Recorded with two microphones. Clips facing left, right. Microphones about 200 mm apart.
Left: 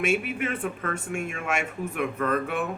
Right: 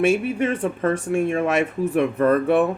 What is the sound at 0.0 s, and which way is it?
Speech, 30° right (ahead or behind).